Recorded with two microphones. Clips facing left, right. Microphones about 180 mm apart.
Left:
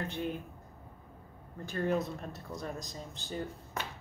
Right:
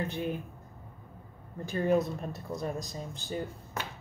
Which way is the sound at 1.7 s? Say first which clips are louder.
Right 5 dB; 10° right (ahead or behind).